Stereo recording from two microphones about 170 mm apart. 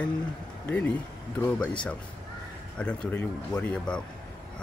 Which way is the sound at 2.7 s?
5° left (ahead or behind).